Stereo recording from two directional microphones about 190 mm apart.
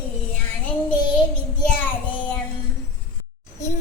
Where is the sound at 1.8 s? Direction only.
10° left (ahead or behind).